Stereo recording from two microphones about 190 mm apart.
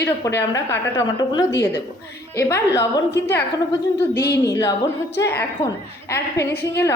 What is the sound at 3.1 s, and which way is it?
Speech, 65° left (ahead or behind).